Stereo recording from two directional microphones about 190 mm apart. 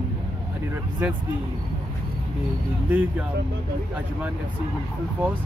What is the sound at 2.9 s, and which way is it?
Speech, 10° right (ahead or behind).